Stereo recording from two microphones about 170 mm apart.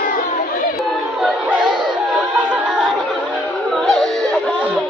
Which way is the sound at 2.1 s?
5° right (ahead or behind).